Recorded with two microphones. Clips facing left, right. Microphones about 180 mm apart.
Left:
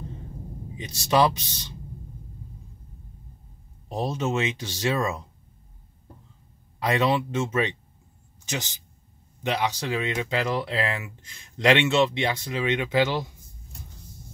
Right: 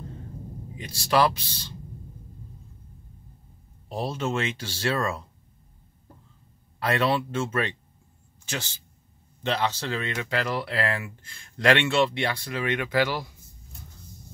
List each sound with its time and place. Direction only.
0.7 s speech: 20° left (ahead or behind)
3.9 s speech: 20° left (ahead or behind)
6.8 s speech: 15° left (ahead or behind)